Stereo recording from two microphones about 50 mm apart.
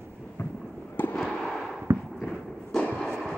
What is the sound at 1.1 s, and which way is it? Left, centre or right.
Fireworks, centre.